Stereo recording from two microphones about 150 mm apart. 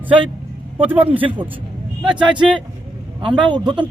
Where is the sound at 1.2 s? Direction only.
30° right (ahead or behind).